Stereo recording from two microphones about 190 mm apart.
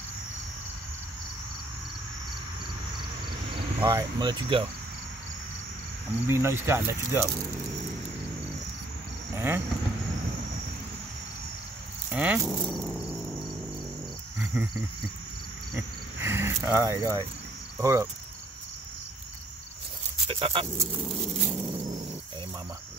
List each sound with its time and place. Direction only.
3.8 s speech: 20° right (ahead or behind)
6.2 s speech: 15° right (ahead or behind)
9.3 s cricket: 15° right (ahead or behind)
12.1 s speech: 5° right (ahead or behind)
12.6 s cricket: centre (ahead or behind)
14.4 s cricket: 10° right (ahead or behind)
15.7 s cricket: 15° right (ahead or behind)
20.2 s speech: 30° right (ahead or behind)
21.5 s dog: 15° right (ahead or behind)